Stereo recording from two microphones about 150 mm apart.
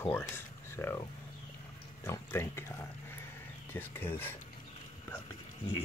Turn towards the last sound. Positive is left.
turn(degrees=15)  # may be behind; listen again after turning